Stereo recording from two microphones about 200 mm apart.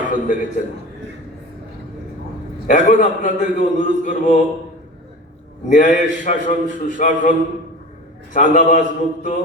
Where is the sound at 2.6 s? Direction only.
40° left (ahead or behind).